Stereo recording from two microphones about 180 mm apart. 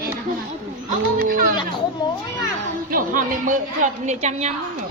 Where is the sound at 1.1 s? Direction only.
50° right (ahead or behind).